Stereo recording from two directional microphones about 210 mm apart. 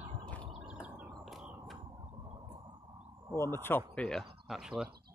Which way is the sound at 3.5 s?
10° left (ahead or behind).